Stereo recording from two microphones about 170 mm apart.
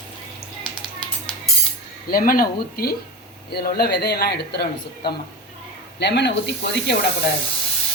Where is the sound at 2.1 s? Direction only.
55° left (ahead or behind); by 5.1 s 75° left (ahead or behind).